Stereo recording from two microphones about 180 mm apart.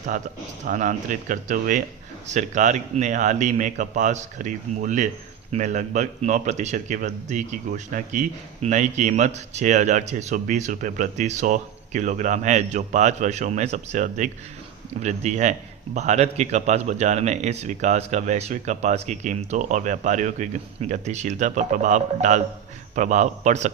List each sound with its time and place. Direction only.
0.6 s a man's voice: 45° right (ahead or behind)